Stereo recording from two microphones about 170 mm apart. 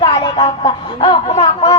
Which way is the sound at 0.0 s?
30° left (ahead or behind).